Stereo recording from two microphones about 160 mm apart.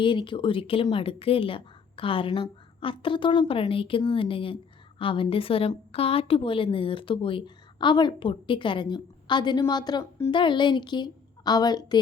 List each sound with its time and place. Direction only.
0.0 s a woman's voice: 30° left (ahead or behind)